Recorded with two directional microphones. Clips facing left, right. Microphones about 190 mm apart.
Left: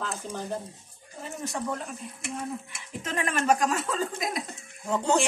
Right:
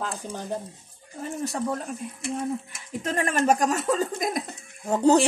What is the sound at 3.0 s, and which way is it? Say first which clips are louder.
Speech: right 4 dB; 40° right (ahead or behind).